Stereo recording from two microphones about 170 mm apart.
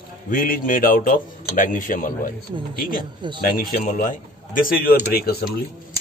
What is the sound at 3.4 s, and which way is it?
A man's voice, 55° left (ahead or behind).